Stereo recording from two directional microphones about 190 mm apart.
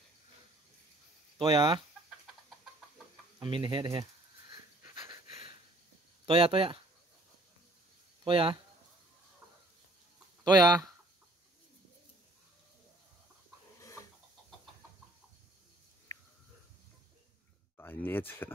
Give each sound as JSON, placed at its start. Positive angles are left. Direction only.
{"t": 1.4, "sound": "speech", "side_deg": -25}
{"t": 3.3, "sound": "speech", "side_deg": -25}
{"t": 6.2, "sound": "speech", "side_deg": -30}
{"t": 8.2, "sound": "speech", "side_deg": -25}
{"t": 10.4, "sound": "speech", "side_deg": -20}
{"t": 13.7, "sound": "a sound", "side_deg": 15}
{"t": 17.7, "sound": "speech", "side_deg": 10}